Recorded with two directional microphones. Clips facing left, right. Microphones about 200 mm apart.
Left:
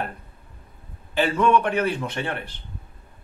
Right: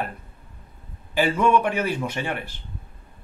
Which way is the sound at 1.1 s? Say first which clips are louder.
Even; 10° right (ahead or behind).